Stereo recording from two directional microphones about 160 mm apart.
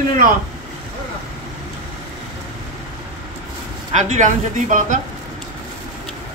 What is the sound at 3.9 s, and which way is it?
A man's voice, 45° right (ahead or behind).